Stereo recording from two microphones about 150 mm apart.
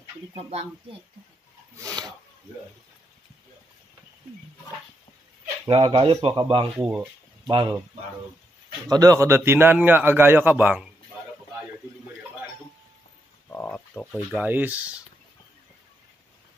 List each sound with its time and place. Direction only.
0.3 s speech: 40° right (ahead or behind)
1.8 s speech: 25° right (ahead or behind)
5.7 s speech: 35° right (ahead or behind)
6.8 s a man's voice: 10° right (ahead or behind)
7.4 s speech: 30° right (ahead or behind)
8.8 s a man's voice: 25° right (ahead or behind)
13.5 s speech: 15° left (ahead or behind)
13.9 s a man's voice: 10° right (ahead or behind)